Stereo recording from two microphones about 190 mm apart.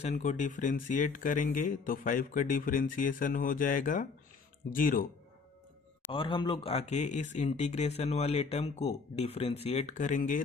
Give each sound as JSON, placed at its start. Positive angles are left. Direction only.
{"t": 0.0, "sound": "speech", "side_deg": 40}
{"t": 6.1, "sound": "speech", "side_deg": 25}